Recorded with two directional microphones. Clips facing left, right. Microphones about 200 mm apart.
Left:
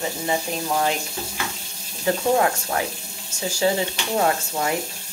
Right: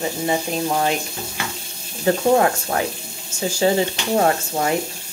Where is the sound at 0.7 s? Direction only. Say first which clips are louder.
Right 1 dB; 20° right (ahead or behind).